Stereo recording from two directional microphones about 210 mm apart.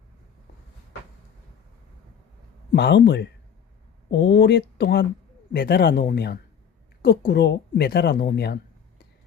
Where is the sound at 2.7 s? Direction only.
55° left (ahead or behind).